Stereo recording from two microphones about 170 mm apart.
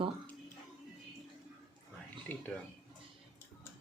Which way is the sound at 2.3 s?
10° left (ahead or behind).